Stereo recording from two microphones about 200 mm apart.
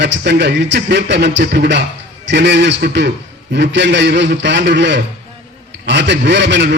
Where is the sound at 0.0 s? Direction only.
60° right (ahead or behind).